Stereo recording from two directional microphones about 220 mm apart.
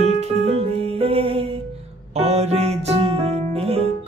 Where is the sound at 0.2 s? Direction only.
25° right (ahead or behind).